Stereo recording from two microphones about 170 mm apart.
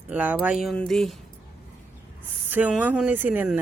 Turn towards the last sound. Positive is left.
turn(degrees=-10)  # may be behind; listen again after turning